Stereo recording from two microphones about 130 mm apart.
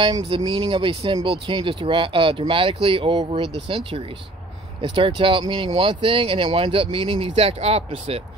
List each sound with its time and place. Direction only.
0.0 s speech: 35° right (ahead or behind); by 8.2 s 50° right (ahead or behind)